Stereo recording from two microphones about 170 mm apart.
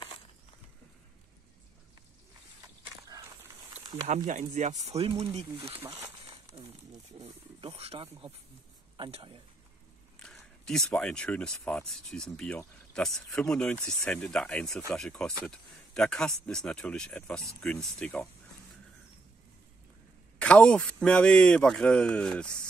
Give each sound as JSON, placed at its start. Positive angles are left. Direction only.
{"t": 2.8, "sound": "a sound", "side_deg": -20}
{"t": 4.1, "sound": "speech", "side_deg": -45}
{"t": 7.2, "sound": "speech", "side_deg": -35}
{"t": 10.1, "sound": "a man's voice", "side_deg": 5}
{"t": 20.3, "sound": "a man's voice", "side_deg": 5}